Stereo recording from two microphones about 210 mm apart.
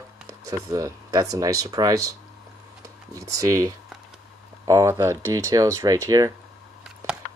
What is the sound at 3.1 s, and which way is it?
Speech, 15° right (ahead or behind).